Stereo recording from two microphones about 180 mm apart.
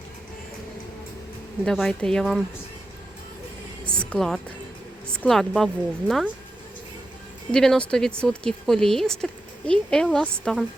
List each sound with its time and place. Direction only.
1.6 s speech: 5° left (ahead or behind)
3.8 s a sound: 5° left (ahead or behind)
5.1 s speech: 5° left (ahead or behind)
7.5 s speech: 5° left (ahead or behind)